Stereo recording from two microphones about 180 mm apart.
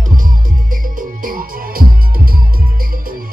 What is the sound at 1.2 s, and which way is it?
Music, 50° right (ahead or behind).